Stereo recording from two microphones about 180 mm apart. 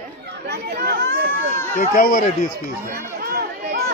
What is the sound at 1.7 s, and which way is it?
Speech, 50° left (ahead or behind).